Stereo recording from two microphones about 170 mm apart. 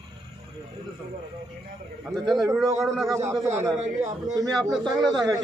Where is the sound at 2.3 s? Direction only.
20° right (ahead or behind).